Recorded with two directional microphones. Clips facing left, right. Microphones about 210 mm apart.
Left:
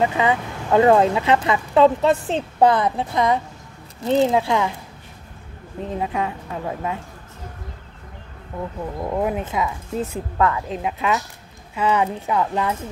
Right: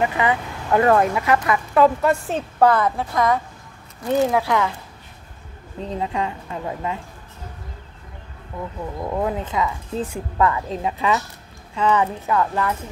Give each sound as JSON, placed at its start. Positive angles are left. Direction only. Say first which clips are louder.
{"t": 0.0, "sound": "speech", "louder": "left 1 dB", "side_deg": 20}
{"t": 5.9, "sound": "speech", "louder": "even", "side_deg": 10}
{"t": 9.0, "sound": "speech", "louder": "left 1 dB", "side_deg": 15}
{"t": 10.3, "sound": "speech", "louder": "right 1 dB", "side_deg": 0}